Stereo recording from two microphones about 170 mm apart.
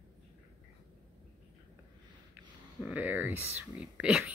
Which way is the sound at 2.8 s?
10° right (ahead or behind).